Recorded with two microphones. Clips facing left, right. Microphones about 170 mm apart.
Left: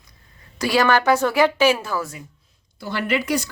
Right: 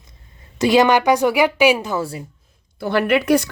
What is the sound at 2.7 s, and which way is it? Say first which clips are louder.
Speech: right 6 dB; 60° right (ahead or behind).